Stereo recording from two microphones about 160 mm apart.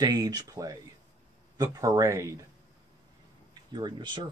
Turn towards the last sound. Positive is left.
turn(degrees=-30)  # may be behind; listen again after turning